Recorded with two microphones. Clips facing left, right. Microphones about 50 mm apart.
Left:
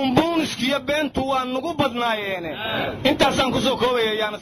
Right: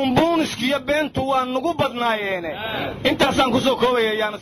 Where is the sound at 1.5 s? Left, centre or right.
Right.